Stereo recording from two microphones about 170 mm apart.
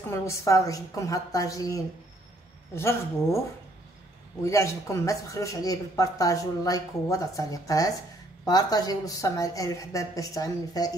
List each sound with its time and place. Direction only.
0.1 s speech: 20° left (ahead or behind)
4.4 s speech: 15° left (ahead or behind)